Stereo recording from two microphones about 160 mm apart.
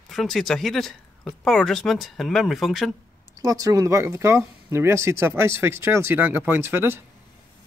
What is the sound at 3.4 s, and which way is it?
Speech, 20° right (ahead or behind).